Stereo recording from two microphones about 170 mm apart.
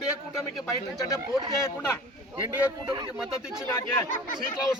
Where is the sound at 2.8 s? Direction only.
25° right (ahead or behind).